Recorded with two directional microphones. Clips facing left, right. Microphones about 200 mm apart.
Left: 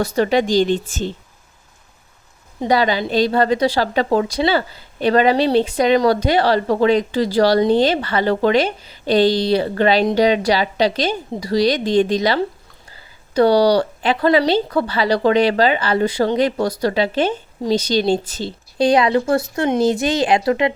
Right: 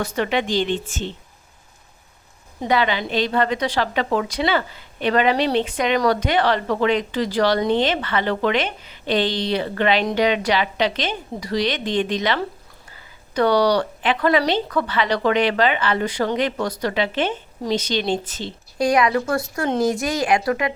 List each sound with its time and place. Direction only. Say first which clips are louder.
0.0 s a woman's voice: left 5 dB; 35° left (ahead or behind)
2.6 s a woman's voice: left 4 dB; 35° left (ahead or behind)